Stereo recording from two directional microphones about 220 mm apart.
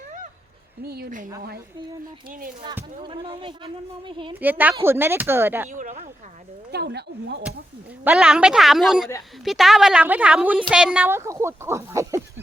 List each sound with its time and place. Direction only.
0.8 s speech: 45° right (ahead or behind)
3.0 s speech: 25° right (ahead or behind)
4.4 s a woman's voice: 10° right (ahead or behind)
5.6 s speech: 35° right (ahead or behind)
6.7 s speech: 50° right (ahead or behind)
8.0 s a woman's voice: centre (ahead or behind)